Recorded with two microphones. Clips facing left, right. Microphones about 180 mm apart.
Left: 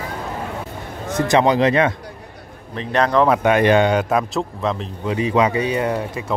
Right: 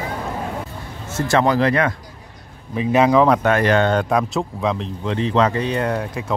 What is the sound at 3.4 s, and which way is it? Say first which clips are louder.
Speech: left 2 dB; 15° left (ahead or behind).